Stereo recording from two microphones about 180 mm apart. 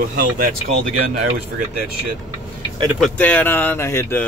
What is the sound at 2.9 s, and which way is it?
Speech, 5° left (ahead or behind).